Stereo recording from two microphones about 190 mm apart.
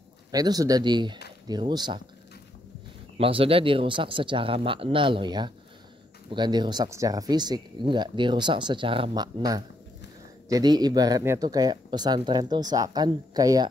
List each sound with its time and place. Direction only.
0.3 s speech: 20° right (ahead or behind)
3.2 s speech: 30° right (ahead or behind)